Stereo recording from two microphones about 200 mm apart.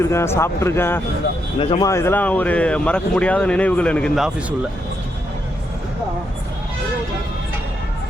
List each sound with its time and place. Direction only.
0.0 s speech: 15° left (ahead or behind)